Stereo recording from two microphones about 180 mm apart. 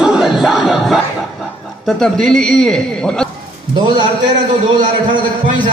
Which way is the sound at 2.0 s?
5° left (ahead or behind).